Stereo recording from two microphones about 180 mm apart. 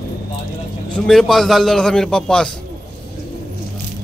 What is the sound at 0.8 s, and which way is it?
A man's voice, 5° left (ahead or behind).